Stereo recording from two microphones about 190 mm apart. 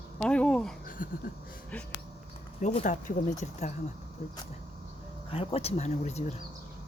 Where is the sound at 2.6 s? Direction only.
35° left (ahead or behind).